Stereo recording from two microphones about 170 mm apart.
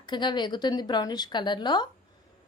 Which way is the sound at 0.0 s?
25° left (ahead or behind).